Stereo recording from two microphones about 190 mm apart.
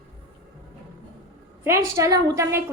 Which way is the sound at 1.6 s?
15° right (ahead or behind).